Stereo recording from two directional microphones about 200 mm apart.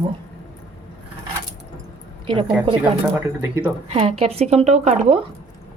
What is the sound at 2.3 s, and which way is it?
Speech, 25° right (ahead or behind).